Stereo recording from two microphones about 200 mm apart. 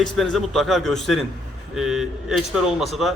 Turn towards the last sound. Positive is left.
turn(degrees=0)  # may be behind; listen again after turning